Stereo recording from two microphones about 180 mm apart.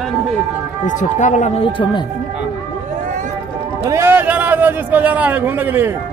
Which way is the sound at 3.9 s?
15° right (ahead or behind).